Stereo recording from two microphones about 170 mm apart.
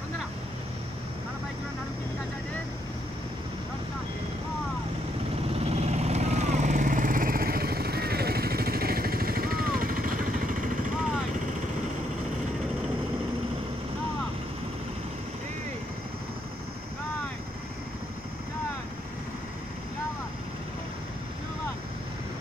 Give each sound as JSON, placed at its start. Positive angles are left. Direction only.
{"t": 5.5, "sound": "vehicle", "side_deg": -35}